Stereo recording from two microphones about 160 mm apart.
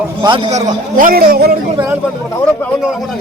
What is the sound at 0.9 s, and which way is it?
Speech, 65° right (ahead or behind).